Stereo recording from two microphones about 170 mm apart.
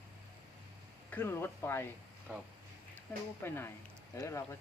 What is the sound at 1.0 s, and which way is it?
Speech, 15° left (ahead or behind).